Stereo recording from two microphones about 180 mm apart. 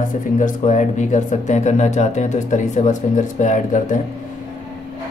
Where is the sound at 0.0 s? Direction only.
45° left (ahead or behind).